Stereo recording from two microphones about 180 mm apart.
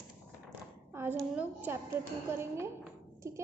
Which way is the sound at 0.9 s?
15° right (ahead or behind).